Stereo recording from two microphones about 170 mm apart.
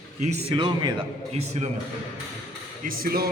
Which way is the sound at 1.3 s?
40° right (ahead or behind).